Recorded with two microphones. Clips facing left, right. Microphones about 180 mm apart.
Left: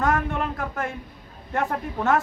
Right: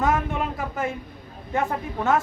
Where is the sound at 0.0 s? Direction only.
5° right (ahead or behind).